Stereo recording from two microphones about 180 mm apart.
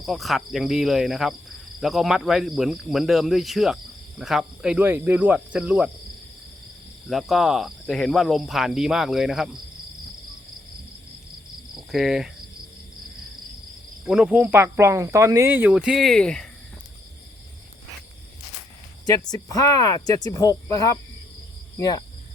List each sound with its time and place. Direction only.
0.0 s speech: centre (ahead or behind)
7.1 s speech: centre (ahead or behind)
11.9 s cricket: centre (ahead or behind)
14.1 s speech: 5° right (ahead or behind)
19.0 s speech: 20° left (ahead or behind)